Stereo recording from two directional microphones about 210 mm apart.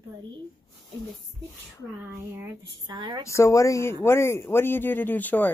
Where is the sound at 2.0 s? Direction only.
10° right (ahead or behind).